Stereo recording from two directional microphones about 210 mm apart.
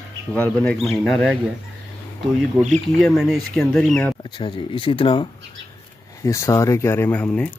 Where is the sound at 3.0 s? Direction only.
Centre (ahead or behind).